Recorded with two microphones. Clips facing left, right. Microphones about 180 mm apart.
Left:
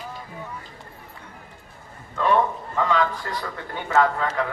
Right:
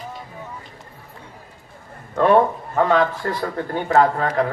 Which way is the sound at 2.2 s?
55° right (ahead or behind).